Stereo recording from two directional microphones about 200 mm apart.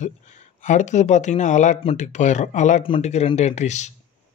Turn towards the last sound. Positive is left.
turn(degrees=35)  # may be behind; listen again after turning